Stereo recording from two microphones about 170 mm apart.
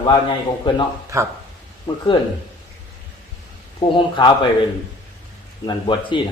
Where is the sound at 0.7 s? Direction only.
30° left (ahead or behind).